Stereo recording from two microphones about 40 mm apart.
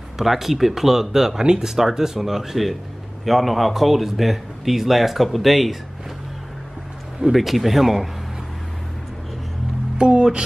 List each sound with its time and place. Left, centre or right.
0.2 s speech: centre
7.3 s speech: centre
9.9 s speech: right